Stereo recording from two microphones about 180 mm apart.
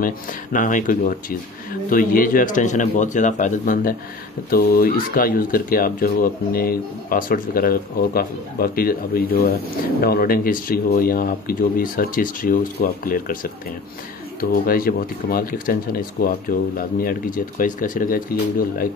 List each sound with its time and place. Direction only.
0.0 s speech: 50° left (ahead or behind)